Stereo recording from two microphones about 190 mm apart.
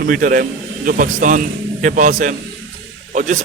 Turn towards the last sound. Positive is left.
turn(degrees=-40)  # may be behind; listen again after turning